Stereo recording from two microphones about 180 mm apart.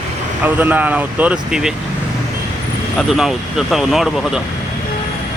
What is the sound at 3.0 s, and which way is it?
Speech, centre (ahead or behind).